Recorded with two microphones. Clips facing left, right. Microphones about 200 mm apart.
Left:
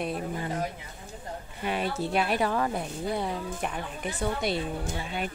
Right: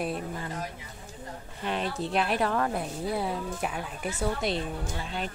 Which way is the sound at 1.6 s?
5° left (ahead or behind).